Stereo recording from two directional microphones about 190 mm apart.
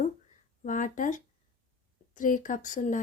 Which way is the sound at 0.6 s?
45° left (ahead or behind).